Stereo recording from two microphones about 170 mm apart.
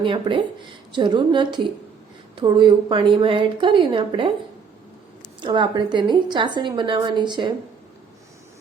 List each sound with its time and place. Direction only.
0.0 s a woman's voice: 30° right (ahead or behind)
5.4 s a woman's voice: 25° right (ahead or behind)